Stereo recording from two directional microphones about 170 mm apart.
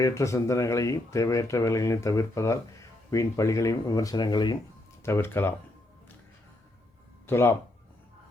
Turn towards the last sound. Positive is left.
turn(degrees=15)  # may be behind; listen again after turning